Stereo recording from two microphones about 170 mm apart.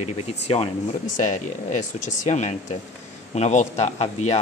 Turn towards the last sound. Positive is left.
turn(degrees=40)  # may be behind; listen again after turning